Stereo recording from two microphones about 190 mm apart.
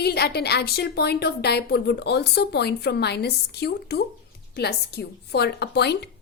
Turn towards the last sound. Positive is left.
turn(degrees=60)  # may be behind; listen again after turning